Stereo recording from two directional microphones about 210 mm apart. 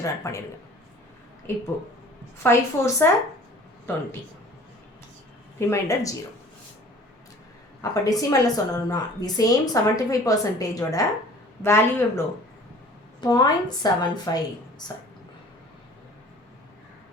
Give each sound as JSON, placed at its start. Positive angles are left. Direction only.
{"t": 0.0, "sound": "a woman's voice", "side_deg": 15}
{"t": 1.5, "sound": "a woman's voice", "side_deg": 10}
{"t": 5.5, "sound": "a woman's voice", "side_deg": 15}
{"t": 7.8, "sound": "a woman's voice", "side_deg": 15}
{"t": 13.2, "sound": "a woman's voice", "side_deg": 20}